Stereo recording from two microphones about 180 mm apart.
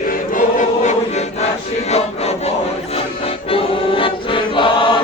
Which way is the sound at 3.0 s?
30° left (ahead or behind).